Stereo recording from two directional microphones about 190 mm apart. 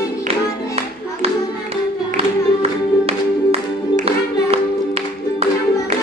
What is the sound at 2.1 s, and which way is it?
Music, 30° right (ahead or behind).